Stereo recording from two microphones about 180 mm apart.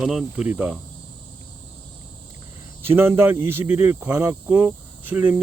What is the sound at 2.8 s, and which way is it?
Speech, 10° right (ahead or behind).